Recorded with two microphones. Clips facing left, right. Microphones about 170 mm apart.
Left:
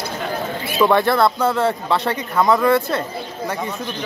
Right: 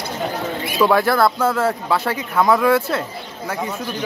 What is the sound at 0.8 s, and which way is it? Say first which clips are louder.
Speech: even; centre (ahead or behind).